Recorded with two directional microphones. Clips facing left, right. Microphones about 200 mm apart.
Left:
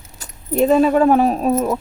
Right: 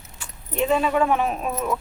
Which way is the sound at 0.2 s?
40° left (ahead or behind).